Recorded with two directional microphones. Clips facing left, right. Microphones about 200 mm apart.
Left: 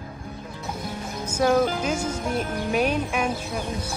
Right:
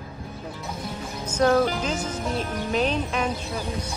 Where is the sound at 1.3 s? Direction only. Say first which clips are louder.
Even; 10° left (ahead or behind).